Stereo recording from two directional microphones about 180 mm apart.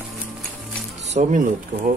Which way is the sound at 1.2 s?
45° right (ahead or behind).